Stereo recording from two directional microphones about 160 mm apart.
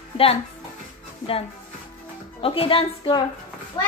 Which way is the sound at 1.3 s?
35° left (ahead or behind).